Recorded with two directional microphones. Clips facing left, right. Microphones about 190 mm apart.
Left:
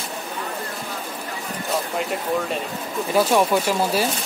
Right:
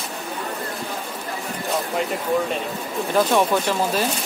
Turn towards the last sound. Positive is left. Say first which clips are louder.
# left 1 dB
turn(degrees=10)  # may be behind; listen again after turning